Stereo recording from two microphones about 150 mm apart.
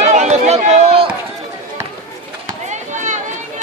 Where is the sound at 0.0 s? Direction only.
50° right (ahead or behind).